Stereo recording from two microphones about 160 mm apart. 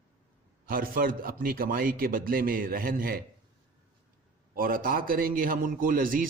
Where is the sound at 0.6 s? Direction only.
65° right (ahead or behind).